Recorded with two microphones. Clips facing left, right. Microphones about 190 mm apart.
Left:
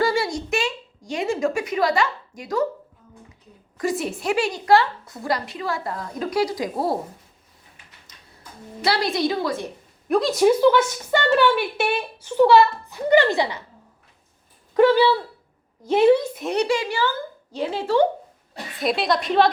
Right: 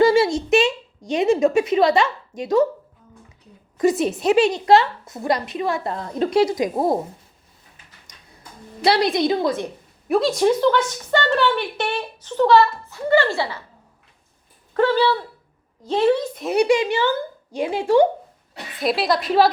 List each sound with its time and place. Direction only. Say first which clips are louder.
0.0 s a sound: right 7 dB; 20° right (ahead or behind)
3.8 s a woman's voice: right 6 dB; 20° right (ahead or behind)
8.8 s a woman's voice: right 4 dB; 20° right (ahead or behind)
10.1 s speech: even; centre (ahead or behind); by 13.7 s 20° left (ahead or behind)
14.7 s speech: left 2 dB; 15° left (ahead or behind)
16.4 s a woman's voice: right 4 dB; 5° right (ahead or behind)
16.6 s speech: right 5 dB; 20° right (ahead or behind)
18.8 s a woman's voice: right 1 dB; centre (ahead or behind)